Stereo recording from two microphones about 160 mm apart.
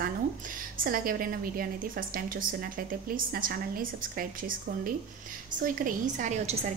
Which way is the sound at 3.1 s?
65° right (ahead or behind).